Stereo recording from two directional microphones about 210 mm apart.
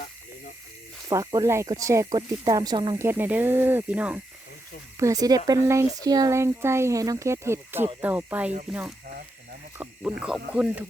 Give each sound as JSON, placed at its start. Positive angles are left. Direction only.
{"t": 1.1, "sound": "speech", "side_deg": -15}
{"t": 9.7, "sound": "speech", "side_deg": -10}